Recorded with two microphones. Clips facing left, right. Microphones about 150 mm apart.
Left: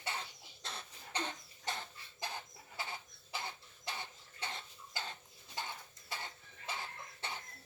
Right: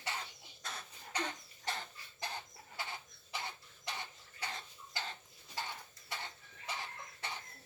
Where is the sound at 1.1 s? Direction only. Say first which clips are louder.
Right 1 dB; 25° left (ahead or behind).